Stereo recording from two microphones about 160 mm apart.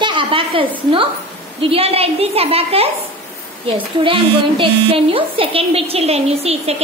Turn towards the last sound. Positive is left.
turn(degrees=-40)  # may be behind; listen again after turning